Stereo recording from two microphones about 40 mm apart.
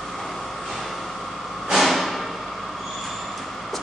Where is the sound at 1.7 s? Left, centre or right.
Centre.